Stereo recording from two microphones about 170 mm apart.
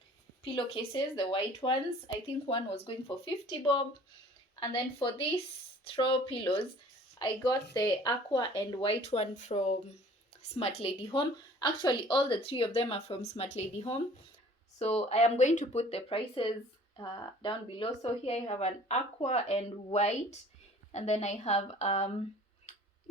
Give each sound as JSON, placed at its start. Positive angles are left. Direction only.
{"t": 0.4, "sound": "speech", "side_deg": 30}